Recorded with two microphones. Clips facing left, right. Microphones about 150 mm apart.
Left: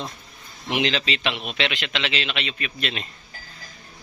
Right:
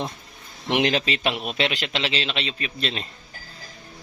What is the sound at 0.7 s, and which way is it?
A man's voice, 50° right (ahead or behind).